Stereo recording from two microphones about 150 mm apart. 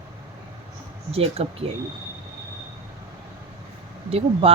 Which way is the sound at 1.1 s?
40° right (ahead or behind).